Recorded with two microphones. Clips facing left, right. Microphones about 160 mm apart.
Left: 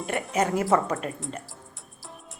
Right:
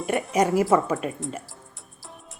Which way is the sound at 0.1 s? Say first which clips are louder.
Right 4 dB; 10° right (ahead or behind).